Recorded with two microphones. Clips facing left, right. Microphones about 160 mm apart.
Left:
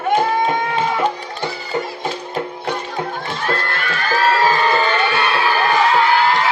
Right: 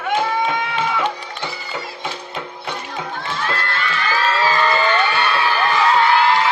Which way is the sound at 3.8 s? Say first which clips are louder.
Left 3 dB; 50° left (ahead or behind).